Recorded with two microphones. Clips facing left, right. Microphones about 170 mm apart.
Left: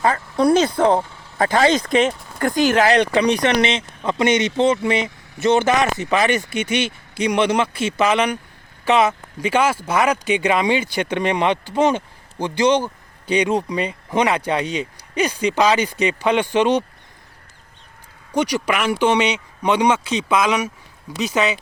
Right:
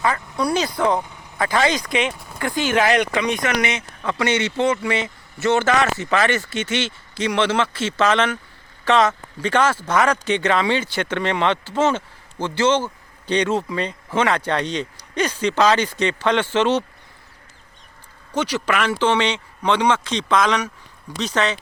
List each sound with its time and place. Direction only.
0.3 s speech: 50° left (ahead or behind); by 16.8 s 15° left (ahead or behind)
18.3 s speech: 15° left (ahead or behind)